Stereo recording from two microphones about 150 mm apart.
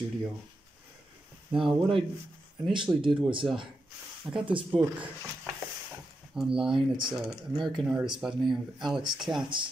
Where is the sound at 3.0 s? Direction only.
35° right (ahead or behind).